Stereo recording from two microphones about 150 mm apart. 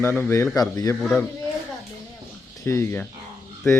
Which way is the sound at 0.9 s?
5° left (ahead or behind).